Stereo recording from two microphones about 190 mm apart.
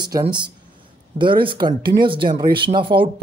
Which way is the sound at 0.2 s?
25° right (ahead or behind).